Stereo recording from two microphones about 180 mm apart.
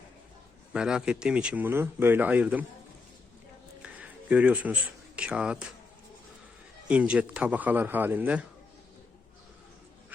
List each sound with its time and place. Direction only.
0.7 s speech: 5° right (ahead or behind)
3.8 s speech: 5° right (ahead or behind)
6.8 s speech: 5° right (ahead or behind)